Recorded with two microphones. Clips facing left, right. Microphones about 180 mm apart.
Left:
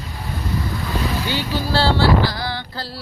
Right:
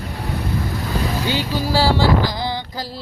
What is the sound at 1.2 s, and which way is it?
Vehicle, 15° right (ahead or behind).